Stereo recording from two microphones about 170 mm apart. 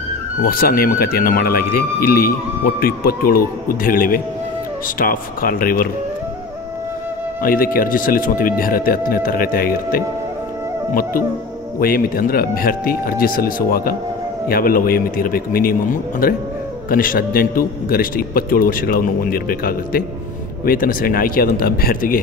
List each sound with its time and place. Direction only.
0.4 s speech: 60° left (ahead or behind)
7.4 s speech: 55° left (ahead or behind)
11.8 s speech: 60° left (ahead or behind)